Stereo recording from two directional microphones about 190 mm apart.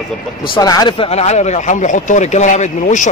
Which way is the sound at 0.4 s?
20° left (ahead or behind).